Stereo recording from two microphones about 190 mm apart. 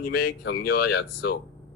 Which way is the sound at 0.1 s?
60° left (ahead or behind).